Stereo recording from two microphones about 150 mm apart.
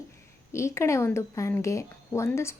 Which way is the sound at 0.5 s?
20° left (ahead or behind).